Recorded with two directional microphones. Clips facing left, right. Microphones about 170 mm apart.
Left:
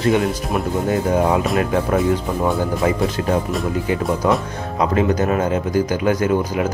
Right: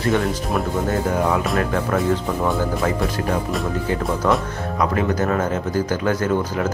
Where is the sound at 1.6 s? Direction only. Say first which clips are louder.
Left 3 dB; 15° left (ahead or behind).